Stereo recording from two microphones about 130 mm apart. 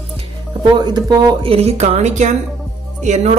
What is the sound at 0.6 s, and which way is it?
Speech, 35° right (ahead or behind).